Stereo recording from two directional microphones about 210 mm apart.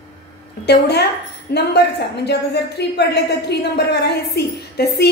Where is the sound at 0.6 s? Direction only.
50° left (ahead or behind).